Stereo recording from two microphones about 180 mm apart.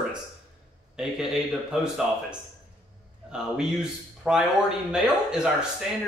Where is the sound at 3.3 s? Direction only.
5° right (ahead or behind).